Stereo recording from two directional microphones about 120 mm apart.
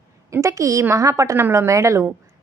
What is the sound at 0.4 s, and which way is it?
A woman's voice, 25° right (ahead or behind).